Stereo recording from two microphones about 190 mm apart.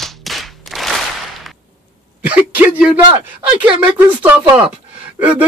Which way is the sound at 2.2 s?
5° right (ahead or behind).